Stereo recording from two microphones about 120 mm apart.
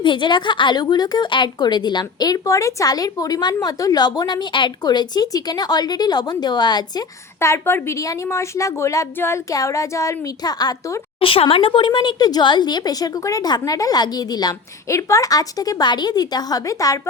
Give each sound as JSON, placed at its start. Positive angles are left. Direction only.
{"t": 0.0, "sound": "a woman's voice", "side_deg": 40}
{"t": 7.3, "sound": "a woman's voice", "side_deg": 20}
{"t": 11.2, "sound": "a woman's voice", "side_deg": 50}